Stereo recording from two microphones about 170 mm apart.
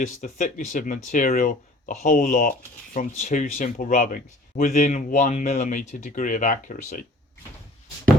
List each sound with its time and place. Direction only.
0.2 s speech: 50° left (ahead or behind)